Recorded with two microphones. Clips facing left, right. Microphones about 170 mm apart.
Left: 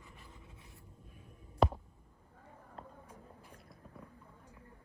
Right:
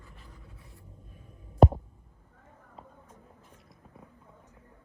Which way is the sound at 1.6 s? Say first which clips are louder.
Right 9 dB; 45° right (ahead or behind).